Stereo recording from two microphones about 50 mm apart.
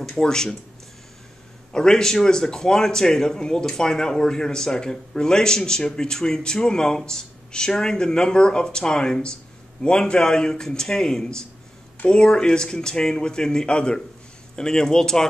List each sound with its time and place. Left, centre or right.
0.1 s speech: centre
1.7 s speech: centre